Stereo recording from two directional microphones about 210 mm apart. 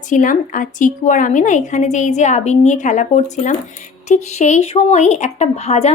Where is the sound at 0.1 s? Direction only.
40° left (ahead or behind).